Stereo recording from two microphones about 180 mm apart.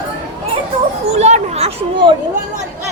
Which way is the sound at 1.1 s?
35° right (ahead or behind).